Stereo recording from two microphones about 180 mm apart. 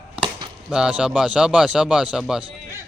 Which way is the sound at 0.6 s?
5° right (ahead or behind).